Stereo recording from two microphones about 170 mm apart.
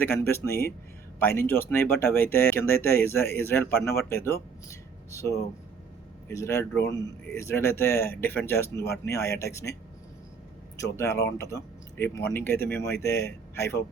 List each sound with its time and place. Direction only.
0.0 s speech: 15° left (ahead or behind)
10.8 s speech: 15° left (ahead or behind)